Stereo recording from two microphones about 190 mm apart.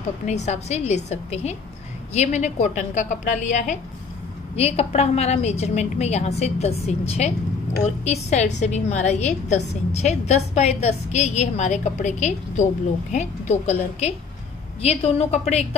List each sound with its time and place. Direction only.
0.2 s a woman's voice: 35° left (ahead or behind)